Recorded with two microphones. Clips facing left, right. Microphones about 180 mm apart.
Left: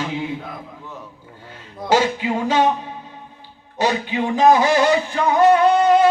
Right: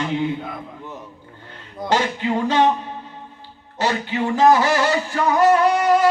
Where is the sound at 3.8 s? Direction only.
15° left (ahead or behind).